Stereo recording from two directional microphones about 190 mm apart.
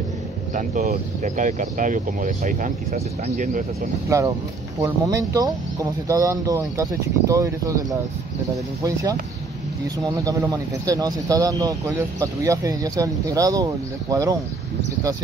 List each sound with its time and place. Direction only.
0.6 s speech: 40° right (ahead or behind)
4.1 s speech: 15° right (ahead or behind)
10.2 s speech: 20° right (ahead or behind)